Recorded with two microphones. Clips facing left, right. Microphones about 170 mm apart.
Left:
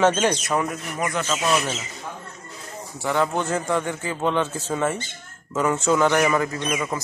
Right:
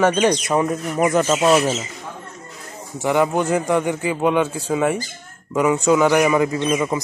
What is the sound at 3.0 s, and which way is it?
A man's voice, 15° right (ahead or behind).